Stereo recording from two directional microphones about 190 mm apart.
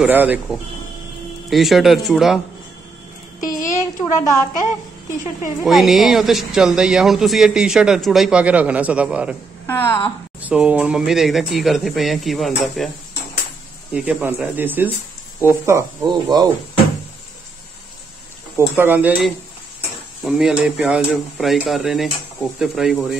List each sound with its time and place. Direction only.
0.0 s speech: 10° right (ahead or behind)
3.4 s a child's voice: 15° left (ahead or behind)
5.6 s speech: centre (ahead or behind)
9.7 s a woman's voice: 10° left (ahead or behind)
10.4 s speech: 5° right (ahead or behind)
13.9 s speech: 5° right (ahead or behind)
18.8 s speech: 10° right (ahead or behind)